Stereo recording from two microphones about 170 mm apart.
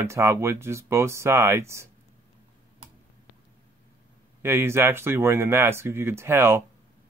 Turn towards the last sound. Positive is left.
turn(degrees=-15)  # may be behind; listen again after turning